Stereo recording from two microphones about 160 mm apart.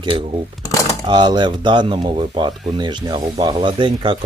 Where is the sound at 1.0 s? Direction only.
30° right (ahead or behind).